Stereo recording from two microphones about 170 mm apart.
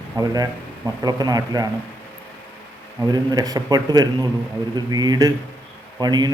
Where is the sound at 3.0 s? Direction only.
25° right (ahead or behind).